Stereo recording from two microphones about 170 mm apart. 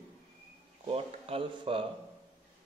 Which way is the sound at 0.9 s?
35° right (ahead or behind).